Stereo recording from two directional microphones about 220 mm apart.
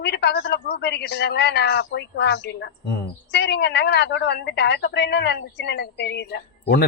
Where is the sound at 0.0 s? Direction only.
50° left (ahead or behind).